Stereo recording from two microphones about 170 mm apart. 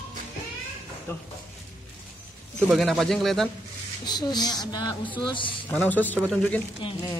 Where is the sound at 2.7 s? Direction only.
Centre (ahead or behind).